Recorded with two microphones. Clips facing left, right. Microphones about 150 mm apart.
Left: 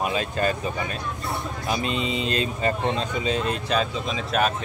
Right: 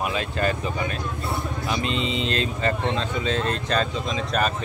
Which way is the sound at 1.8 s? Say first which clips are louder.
Even; 25° right (ahead or behind).